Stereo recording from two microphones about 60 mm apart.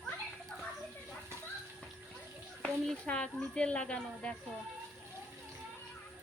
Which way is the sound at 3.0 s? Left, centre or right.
Centre.